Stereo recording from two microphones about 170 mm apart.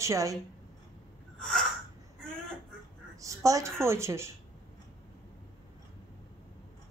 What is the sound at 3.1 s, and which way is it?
A woman's voice, 20° right (ahead or behind).